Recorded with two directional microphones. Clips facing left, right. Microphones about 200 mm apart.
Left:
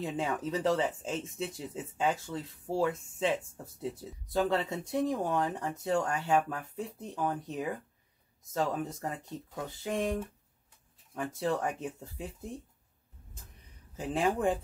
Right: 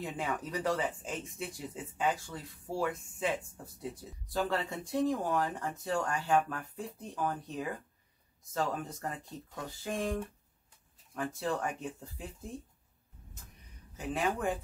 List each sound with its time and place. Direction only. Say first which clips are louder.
0.0 s speech: left 4 dB; 25° left (ahead or behind)
11.1 s speech: left 2 dB; 20° left (ahead or behind)
13.9 s speech: left 3 dB; 30° left (ahead or behind)